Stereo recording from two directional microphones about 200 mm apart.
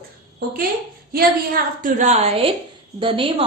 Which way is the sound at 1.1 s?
50° right (ahead or behind).